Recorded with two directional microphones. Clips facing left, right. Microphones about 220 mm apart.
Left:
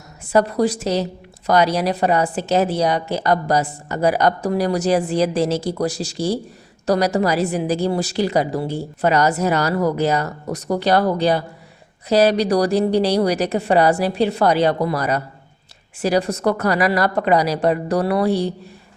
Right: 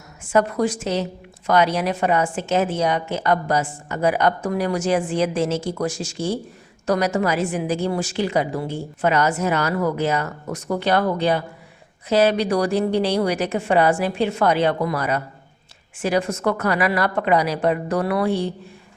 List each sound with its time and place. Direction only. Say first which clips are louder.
0.3 s a woman's voice: left 2 dB; 35° left (ahead or behind)